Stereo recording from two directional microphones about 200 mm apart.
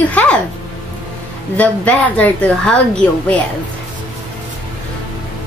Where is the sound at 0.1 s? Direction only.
5° left (ahead or behind).